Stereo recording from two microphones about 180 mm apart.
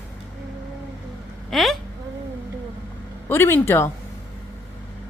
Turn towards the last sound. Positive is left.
turn(degrees=15)  # may be behind; listen again after turning